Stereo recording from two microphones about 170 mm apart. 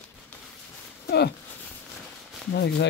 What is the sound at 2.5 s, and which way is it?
Speech, 90° left.